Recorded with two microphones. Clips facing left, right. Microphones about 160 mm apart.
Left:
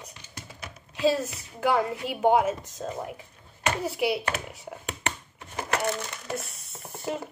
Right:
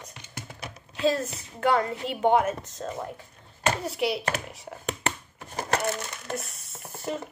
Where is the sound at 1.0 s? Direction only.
5° left (ahead or behind).